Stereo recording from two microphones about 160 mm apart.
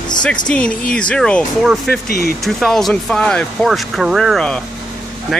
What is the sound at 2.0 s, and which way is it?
Speech, 70° left (ahead or behind).